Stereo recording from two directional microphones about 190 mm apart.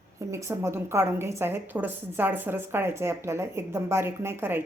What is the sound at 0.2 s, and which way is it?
A woman's voice, 15° right (ahead or behind).